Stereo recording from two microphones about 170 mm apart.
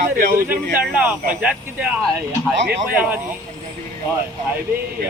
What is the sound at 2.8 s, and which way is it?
Speech, 10° right (ahead or behind).